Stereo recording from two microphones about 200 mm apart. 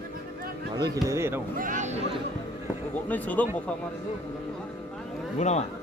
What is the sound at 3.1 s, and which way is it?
Speech, 10° left (ahead or behind).